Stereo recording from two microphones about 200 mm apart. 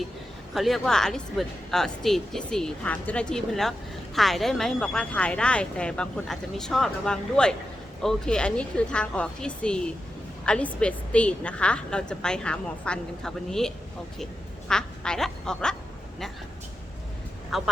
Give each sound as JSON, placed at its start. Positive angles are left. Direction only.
{"t": 0.5, "sound": "a woman's voice", "side_deg": 0}
{"t": 17.5, "sound": "a woman's voice", "side_deg": 0}